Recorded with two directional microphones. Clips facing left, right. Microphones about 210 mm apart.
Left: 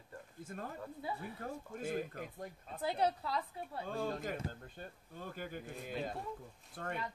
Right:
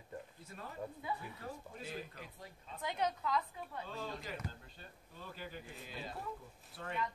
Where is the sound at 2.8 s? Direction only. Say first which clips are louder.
Left 3 dB; 35° left (ahead or behind).